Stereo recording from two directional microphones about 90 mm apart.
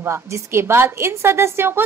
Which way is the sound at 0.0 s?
30° right (ahead or behind).